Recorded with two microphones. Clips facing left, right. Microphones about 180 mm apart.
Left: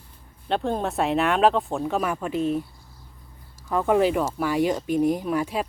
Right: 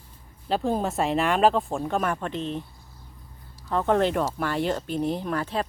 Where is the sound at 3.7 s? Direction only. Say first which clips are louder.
Left 2 dB; 10° left (ahead or behind).